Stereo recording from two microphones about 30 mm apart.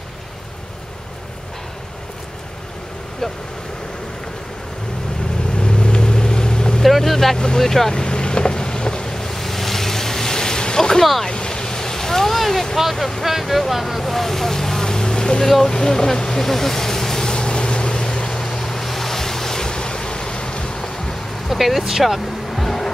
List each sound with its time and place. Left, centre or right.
5.6 s vehicle: left
6.8 s boat: centre
7.5 s speech: centre
7.9 s boat: left
9.2 s a sound: centre
11.2 s waves: left
12.4 s vehicle: centre
13.2 s speech: centre; by 15.4 s left
15.4 s speech: centre
17.3 s vehicle: left
18.6 s waves: centre
21.5 s speech: centre
22.5 s music: centre